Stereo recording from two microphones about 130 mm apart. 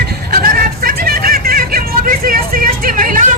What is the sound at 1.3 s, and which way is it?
Vehicle, 90° right.